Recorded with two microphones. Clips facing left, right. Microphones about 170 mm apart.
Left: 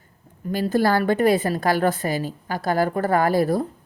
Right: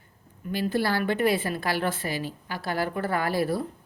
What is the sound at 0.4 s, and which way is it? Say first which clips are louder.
A woman's voice: left 6 dB; 40° left (ahead or behind).